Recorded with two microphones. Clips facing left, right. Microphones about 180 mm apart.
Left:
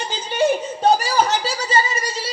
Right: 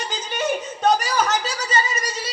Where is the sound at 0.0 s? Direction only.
30° left (ahead or behind).